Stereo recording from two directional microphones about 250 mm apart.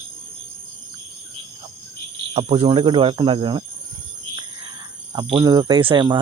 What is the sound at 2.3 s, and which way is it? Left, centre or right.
Speech, right.